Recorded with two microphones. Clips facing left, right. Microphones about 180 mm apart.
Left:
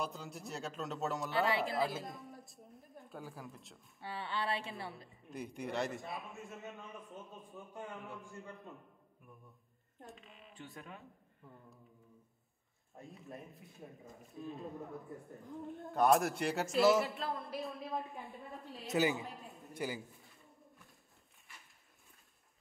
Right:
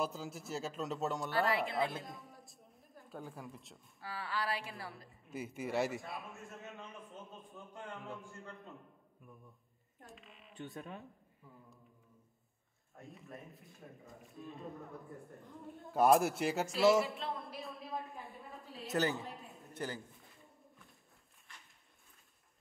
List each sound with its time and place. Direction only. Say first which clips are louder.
0.0 s a man's voice: right 3 dB; centre (ahead or behind)
4.0 s a sound: even; 25° left (ahead or behind)
4.7 s a man's voice: left 2 dB; centre (ahead or behind)
10.0 s speech: left 2 dB; centre (ahead or behind)
10.6 s speech: right 5 dB; 20° right (ahead or behind)
11.4 s a man's voice: left 2 dB; centre (ahead or behind)
12.9 s a man's voice: left 1 dB; centre (ahead or behind)